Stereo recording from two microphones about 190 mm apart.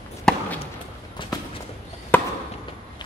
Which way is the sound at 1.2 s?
25° left (ahead or behind).